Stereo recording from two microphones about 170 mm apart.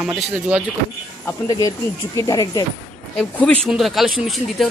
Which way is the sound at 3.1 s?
5° left (ahead or behind).